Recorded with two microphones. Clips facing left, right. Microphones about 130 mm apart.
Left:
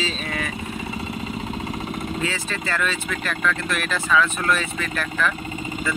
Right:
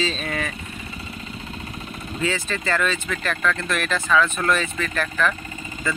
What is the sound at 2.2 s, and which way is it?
Speech, 5° left (ahead or behind).